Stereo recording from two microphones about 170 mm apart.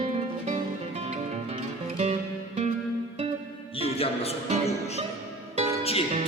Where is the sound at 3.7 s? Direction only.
35° left (ahead or behind).